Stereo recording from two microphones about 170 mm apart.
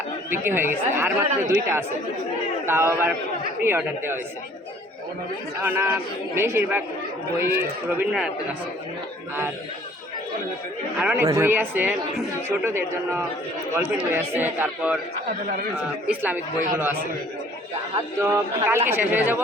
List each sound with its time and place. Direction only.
0.3 s speech: 15° right (ahead or behind)
5.6 s speech: 15° right (ahead or behind)
10.9 s speech: 10° right (ahead or behind)
16.0 s speech: 10° right (ahead or behind)
18.2 s speech: 15° right (ahead or behind)